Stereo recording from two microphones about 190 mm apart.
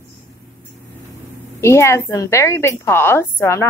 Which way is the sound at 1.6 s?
15° left (ahead or behind).